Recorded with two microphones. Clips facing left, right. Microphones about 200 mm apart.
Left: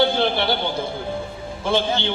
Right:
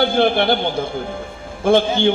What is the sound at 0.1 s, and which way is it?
Speech, 50° right (ahead or behind).